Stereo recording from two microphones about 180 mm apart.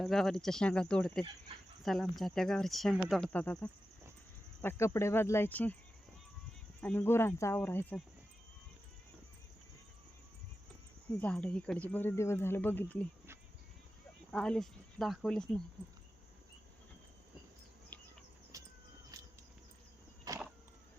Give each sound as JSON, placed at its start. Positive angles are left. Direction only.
{"t": 0.0, "sound": "speech", "side_deg": 0}
{"t": 6.8, "sound": "speech", "side_deg": 10}
{"t": 11.2, "sound": "speech", "side_deg": 5}
{"t": 14.3, "sound": "speech", "side_deg": 5}
{"t": 17.9, "sound": "a sound", "side_deg": 10}
{"t": 18.5, "sound": "vehicle", "side_deg": -20}
{"t": 19.1, "sound": "a sound", "side_deg": -20}